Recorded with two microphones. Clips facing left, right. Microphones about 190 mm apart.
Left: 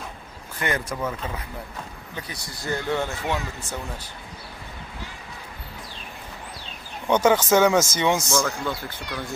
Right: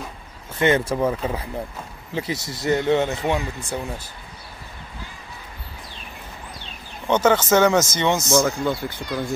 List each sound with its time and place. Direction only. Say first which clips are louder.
0.6 s speech: right 8 dB; 25° right (ahead or behind)
7.1 s speech: right 1 dB; 10° left (ahead or behind)
8.3 s speech: right 5 dB; 25° right (ahead or behind)